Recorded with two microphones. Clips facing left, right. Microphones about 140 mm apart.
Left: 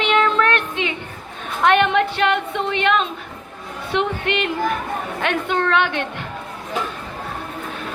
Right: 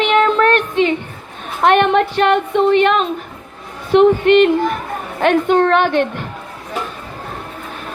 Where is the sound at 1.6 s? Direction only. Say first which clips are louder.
Right 4 dB; 45° right (ahead or behind).